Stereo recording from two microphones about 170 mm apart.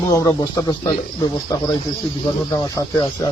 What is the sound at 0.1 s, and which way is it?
Speech, 20° left (ahead or behind).